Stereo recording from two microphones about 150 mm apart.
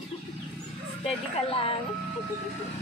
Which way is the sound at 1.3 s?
40° left (ahead or behind).